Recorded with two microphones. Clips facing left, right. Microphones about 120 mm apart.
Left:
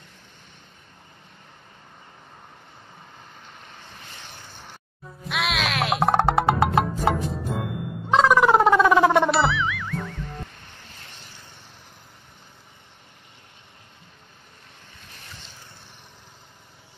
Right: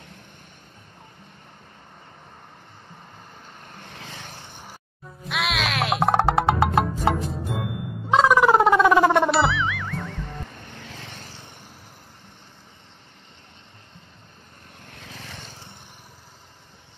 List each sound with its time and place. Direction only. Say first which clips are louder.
4.4 s a sound: right 2 dB; 15° right (ahead or behind)
5.2 s music: even; centre (ahead or behind)
10.8 s vehicle: right 7 dB; 90° right
14.9 s vehicle: right 7 dB; 90° right